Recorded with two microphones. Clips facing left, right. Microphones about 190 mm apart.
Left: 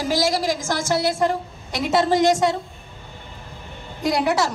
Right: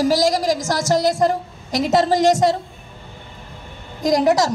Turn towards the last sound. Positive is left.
turn(degrees=-40)  # may be behind; listen again after turning